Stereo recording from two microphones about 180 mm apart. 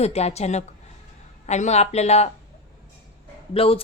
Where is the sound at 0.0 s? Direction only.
35° left (ahead or behind).